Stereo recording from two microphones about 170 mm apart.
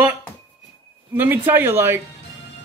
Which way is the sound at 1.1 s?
10° right (ahead or behind).